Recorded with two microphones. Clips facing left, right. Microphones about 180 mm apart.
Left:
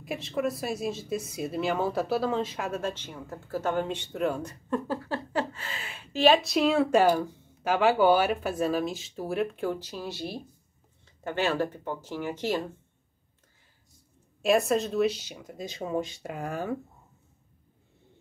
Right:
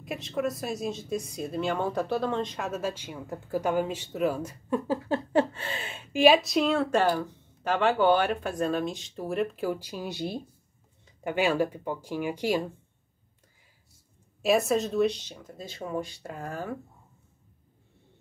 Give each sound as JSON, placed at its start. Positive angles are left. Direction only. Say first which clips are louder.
{"t": 0.0, "sound": "speech", "louder": "left 1 dB", "side_deg": 0}
{"t": 6.1, "sound": "speech", "louder": "right 1 dB", "side_deg": -5}
{"t": 14.4, "sound": "speech", "louder": "even", "side_deg": 0}